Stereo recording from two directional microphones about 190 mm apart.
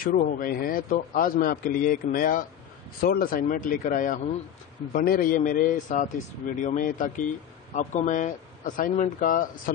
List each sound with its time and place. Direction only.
0.0 s a man's voice: 45° left (ahead or behind)